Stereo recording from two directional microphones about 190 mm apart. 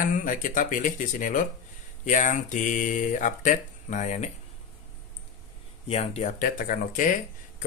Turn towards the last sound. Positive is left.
turn(degrees=45)  # may be behind; listen again after turning